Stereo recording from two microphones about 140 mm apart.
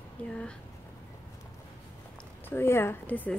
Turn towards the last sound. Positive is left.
turn(degrees=10)  # may be behind; listen again after turning